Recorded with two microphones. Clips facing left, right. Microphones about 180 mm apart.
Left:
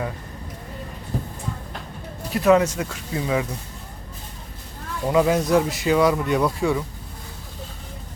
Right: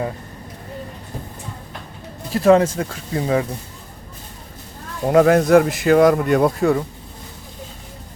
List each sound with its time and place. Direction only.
2.3 s speech: 30° right (ahead or behind)
5.1 s speech: 60° right (ahead or behind)